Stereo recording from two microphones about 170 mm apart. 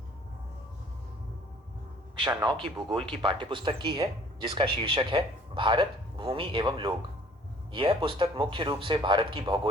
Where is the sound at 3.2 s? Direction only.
30° right (ahead or behind).